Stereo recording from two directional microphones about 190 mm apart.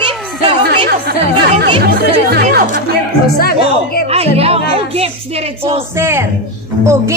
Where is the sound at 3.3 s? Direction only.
50° left (ahead or behind).